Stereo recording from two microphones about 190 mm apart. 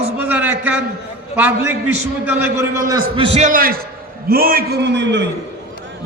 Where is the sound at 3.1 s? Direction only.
25° right (ahead or behind).